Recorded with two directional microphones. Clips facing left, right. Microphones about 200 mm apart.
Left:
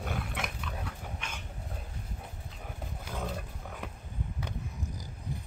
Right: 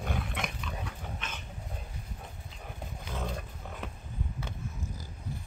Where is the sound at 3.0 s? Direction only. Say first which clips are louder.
Even; 5° left (ahead or behind).